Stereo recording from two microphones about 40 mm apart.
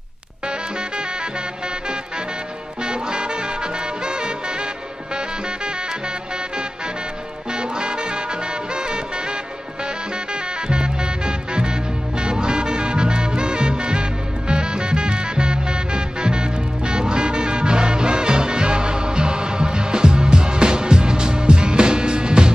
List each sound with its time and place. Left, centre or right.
2.8 s music: right
7.5 s music: right
10.7 s music: right